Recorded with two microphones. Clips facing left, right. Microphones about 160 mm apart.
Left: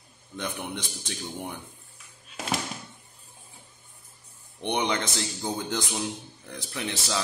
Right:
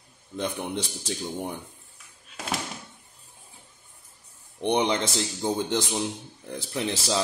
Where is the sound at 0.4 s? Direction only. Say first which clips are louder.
Right 4 dB; 30° right (ahead or behind).